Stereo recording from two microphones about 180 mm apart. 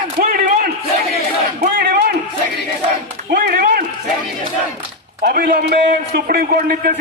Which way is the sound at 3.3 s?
55° right (ahead or behind).